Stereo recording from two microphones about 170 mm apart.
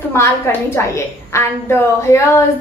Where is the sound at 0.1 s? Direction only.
15° left (ahead or behind).